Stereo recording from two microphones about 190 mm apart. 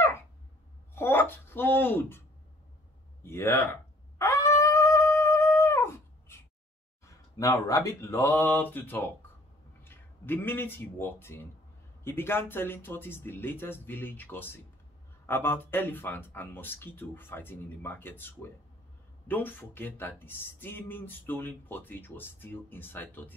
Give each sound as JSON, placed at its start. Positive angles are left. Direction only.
{"t": 0.9, "sound": "speech", "side_deg": 10}
{"t": 4.2, "sound": "dog", "side_deg": 15}
{"t": 7.3, "sound": "speech", "side_deg": 15}